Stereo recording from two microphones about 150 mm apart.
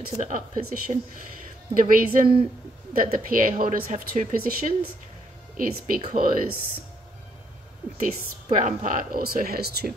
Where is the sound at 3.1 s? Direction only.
65° right (ahead or behind).